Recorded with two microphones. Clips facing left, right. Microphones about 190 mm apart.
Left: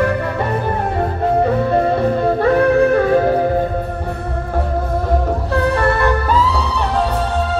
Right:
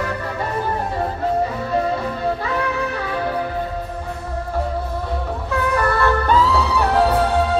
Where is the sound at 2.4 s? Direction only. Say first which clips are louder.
Left 11 dB; 50° left (ahead or behind).